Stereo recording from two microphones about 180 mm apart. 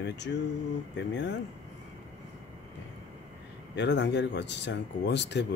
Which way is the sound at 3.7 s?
75° left (ahead or behind).